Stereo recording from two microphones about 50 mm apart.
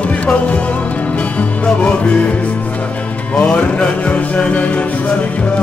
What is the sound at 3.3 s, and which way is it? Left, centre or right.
Music, left.